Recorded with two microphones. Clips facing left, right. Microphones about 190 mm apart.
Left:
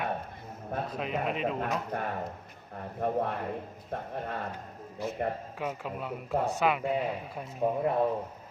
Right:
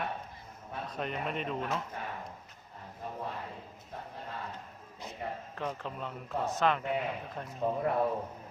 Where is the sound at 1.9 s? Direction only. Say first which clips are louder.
Left 7 dB; 55° left (ahead or behind).